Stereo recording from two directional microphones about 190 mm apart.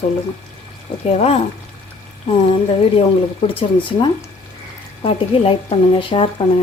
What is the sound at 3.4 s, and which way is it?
Speech, 25° left (ahead or behind).